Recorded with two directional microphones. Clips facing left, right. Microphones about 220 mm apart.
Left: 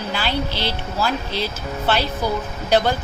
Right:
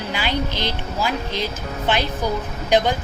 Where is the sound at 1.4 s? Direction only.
15° right (ahead or behind).